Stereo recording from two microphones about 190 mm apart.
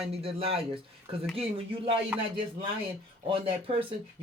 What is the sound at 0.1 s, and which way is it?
Speech, 30° right (ahead or behind).